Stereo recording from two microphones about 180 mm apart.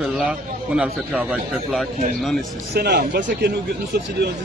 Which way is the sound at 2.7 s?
60° right (ahead or behind).